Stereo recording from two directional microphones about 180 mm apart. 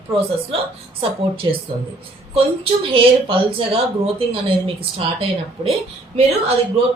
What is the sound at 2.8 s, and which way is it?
A woman's voice, 30° right (ahead or behind).